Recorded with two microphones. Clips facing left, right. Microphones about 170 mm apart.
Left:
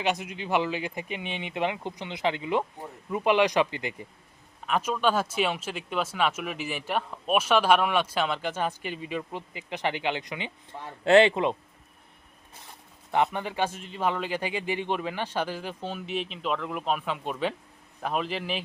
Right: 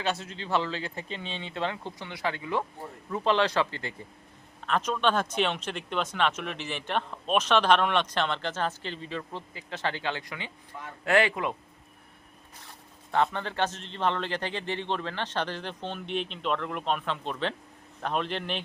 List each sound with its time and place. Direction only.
0.0 s speech: 15° left (ahead or behind)
13.1 s a man's voice: 15° left (ahead or behind)